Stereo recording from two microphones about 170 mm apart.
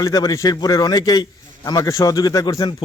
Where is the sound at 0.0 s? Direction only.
20° left (ahead or behind).